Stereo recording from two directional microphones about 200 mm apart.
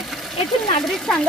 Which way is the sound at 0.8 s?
Centre (ahead or behind).